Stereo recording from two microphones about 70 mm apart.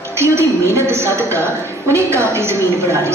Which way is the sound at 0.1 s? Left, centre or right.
Right.